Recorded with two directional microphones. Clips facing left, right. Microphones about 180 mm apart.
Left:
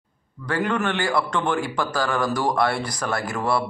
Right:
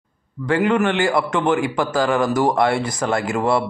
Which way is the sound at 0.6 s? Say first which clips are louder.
Right 5 dB; 15° right (ahead or behind).